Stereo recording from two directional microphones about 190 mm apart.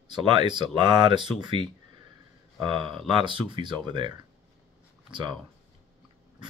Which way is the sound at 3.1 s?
25° right (ahead or behind).